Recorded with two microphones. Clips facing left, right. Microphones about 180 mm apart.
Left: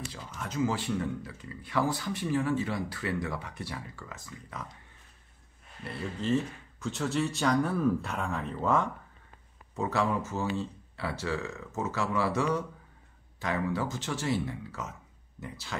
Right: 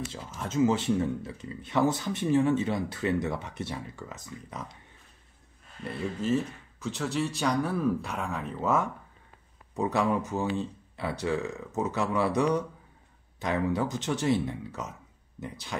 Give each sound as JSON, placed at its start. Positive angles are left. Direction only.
{"t": 0.1, "sound": "speech", "side_deg": -25}
{"t": 6.2, "sound": "speech", "side_deg": -5}
{"t": 9.8, "sound": "speech", "side_deg": -15}